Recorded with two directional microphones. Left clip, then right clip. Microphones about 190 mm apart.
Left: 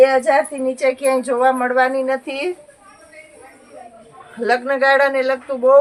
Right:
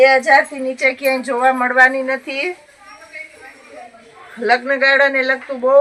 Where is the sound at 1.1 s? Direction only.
30° left (ahead or behind).